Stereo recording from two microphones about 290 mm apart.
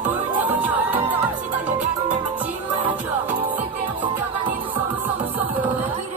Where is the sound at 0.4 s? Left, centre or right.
Centre.